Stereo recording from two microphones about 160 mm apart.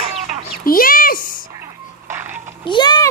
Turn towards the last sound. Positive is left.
turn(degrees=25)  # may be behind; listen again after turning